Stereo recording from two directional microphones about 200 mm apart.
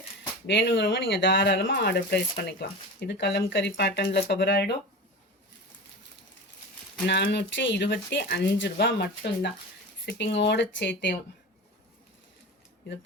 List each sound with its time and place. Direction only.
0.4 s speech: 65° left (ahead or behind)
2.0 s speech: 50° left (ahead or behind)
7.1 s speech: 60° left (ahead or behind)